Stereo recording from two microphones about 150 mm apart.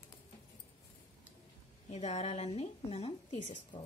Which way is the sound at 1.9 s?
45° left (ahead or behind).